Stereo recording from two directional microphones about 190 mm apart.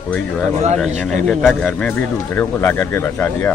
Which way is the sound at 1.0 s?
Centre (ahead or behind).